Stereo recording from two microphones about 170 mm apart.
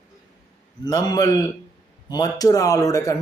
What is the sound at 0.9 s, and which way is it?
A man's voice, 20° left (ahead or behind).